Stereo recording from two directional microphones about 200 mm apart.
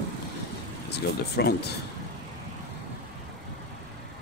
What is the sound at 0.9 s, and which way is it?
Speech, 55° left (ahead or behind).